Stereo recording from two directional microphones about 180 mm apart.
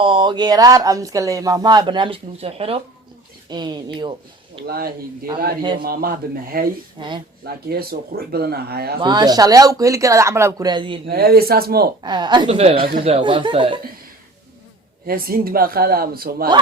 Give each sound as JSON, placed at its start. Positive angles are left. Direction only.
{"t": 0.0, "sound": "speech", "side_deg": -25}
{"t": 4.6, "sound": "speech", "side_deg": -60}
{"t": 7.0, "sound": "speech", "side_deg": -25}
{"t": 7.4, "sound": "speech", "side_deg": -60}
{"t": 9.0, "sound": "speech", "side_deg": -25}
{"t": 11.0, "sound": "speech", "side_deg": -60}
{"t": 12.0, "sound": "speech", "side_deg": -25}
{"t": 15.0, "sound": "speech", "side_deg": -55}